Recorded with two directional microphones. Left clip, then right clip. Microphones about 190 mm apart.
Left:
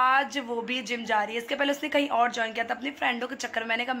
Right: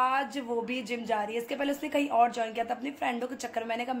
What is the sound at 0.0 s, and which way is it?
A woman's voice, 5° right (ahead or behind).